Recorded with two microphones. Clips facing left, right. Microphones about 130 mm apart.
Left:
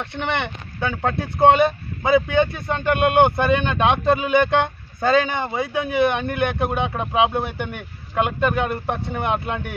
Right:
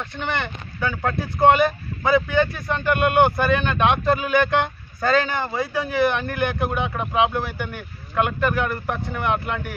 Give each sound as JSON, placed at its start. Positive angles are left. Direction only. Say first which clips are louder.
{"t": 0.0, "sound": "a man's voice", "louder": "left 2 dB", "side_deg": 25}